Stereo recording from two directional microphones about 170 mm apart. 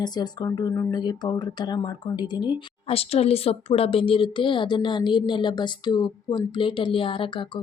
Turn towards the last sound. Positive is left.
turn(degrees=30)  # may be behind; listen again after turning